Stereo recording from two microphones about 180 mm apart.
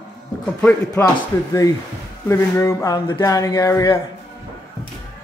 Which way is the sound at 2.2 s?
15° left (ahead or behind).